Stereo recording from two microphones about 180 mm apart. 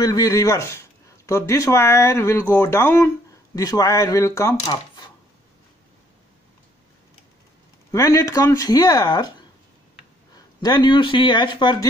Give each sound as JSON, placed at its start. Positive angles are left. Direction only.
{"t": 0.0, "sound": "speech", "side_deg": 20}
{"t": 7.9, "sound": "speech", "side_deg": 15}
{"t": 10.3, "sound": "speech", "side_deg": 25}